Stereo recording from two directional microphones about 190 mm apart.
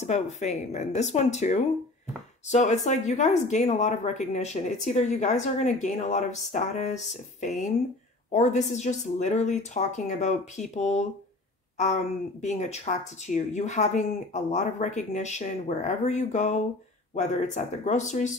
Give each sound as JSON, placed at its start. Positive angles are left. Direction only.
{"t": 0.0, "sound": "speech", "side_deg": 35}